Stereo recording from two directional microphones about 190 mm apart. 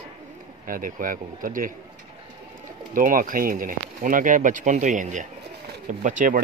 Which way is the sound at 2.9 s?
45° right (ahead or behind).